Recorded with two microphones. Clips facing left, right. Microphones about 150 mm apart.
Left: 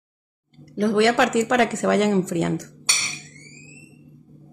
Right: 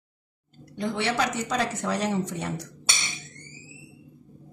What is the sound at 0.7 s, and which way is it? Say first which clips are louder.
Speech: left 9 dB; 85° left.